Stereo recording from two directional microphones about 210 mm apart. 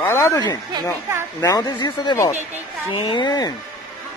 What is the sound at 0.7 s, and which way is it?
Speech, 10° right (ahead or behind).